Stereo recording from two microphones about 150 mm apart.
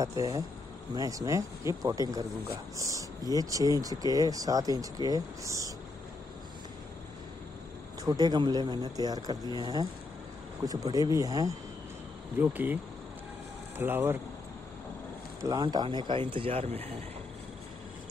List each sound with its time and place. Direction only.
0.0 s speech: 20° right (ahead or behind)
8.0 s speech: 25° right (ahead or behind)
12.4 s speech: 10° right (ahead or behind)
13.7 s speech: 15° right (ahead or behind)
15.4 s speech: 25° right (ahead or behind); by 16.9 s 40° right (ahead or behind)